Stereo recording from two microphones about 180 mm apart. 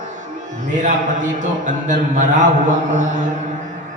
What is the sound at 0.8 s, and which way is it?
Speech, 45° right (ahead or behind).